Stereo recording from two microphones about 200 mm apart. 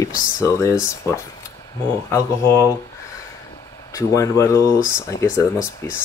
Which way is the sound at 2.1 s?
15° left (ahead or behind).